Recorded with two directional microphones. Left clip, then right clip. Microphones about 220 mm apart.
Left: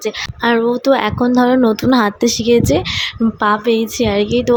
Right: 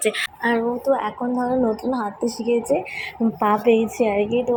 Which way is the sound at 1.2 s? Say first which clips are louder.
Left 10 dB; 55° left (ahead or behind).